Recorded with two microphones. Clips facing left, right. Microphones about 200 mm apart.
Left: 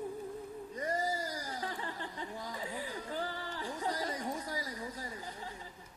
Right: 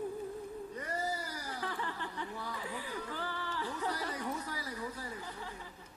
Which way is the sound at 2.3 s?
40° left (ahead or behind).